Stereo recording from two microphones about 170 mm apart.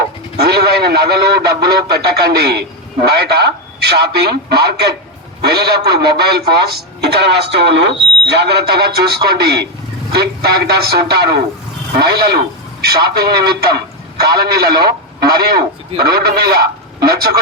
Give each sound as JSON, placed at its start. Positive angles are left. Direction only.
{"t": 0.3, "sound": "goose", "side_deg": -70}
{"t": 2.0, "sound": "a man's voice", "side_deg": -70}